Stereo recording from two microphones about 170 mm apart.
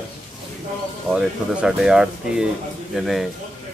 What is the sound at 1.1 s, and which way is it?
Speech, 5° right (ahead or behind).